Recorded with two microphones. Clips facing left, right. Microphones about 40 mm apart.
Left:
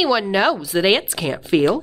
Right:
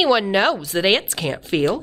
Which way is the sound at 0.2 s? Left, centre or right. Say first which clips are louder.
Even; centre.